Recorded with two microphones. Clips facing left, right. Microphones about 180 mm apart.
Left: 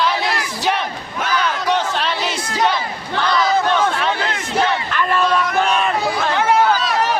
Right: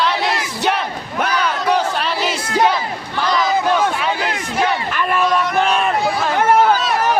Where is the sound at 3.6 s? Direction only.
10° right (ahead or behind).